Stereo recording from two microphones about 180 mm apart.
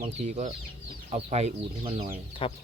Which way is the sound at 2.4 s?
30° left (ahead or behind).